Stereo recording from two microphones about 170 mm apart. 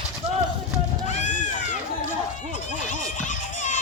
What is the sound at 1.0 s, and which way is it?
Run, 45° left (ahead or behind).